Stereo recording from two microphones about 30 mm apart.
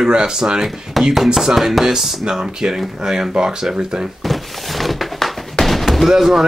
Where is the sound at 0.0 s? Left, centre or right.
Right.